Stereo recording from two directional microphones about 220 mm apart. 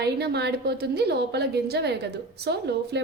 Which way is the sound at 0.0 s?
50° right (ahead or behind).